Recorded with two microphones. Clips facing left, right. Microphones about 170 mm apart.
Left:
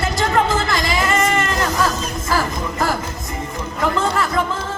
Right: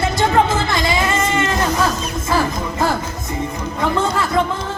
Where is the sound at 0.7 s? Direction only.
25° right (ahead or behind).